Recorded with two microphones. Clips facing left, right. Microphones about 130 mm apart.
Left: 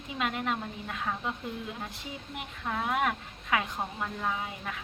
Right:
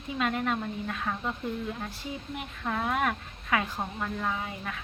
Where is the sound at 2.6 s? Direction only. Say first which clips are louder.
Right 1 dB; 5° left (ahead or behind).